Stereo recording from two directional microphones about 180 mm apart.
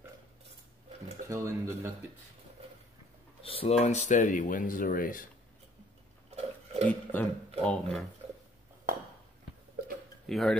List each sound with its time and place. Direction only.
1.3 s a man's voice: 15° right (ahead or behind)
3.4 s speech: 30° left (ahead or behind); by 5.3 s 50° left (ahead or behind)
6.3 s a sound: 35° right (ahead or behind)
6.9 s speech: 10° left (ahead or behind)
10.2 s speech: centre (ahead or behind)